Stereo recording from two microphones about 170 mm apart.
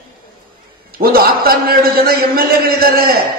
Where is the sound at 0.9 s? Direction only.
60° right (ahead or behind).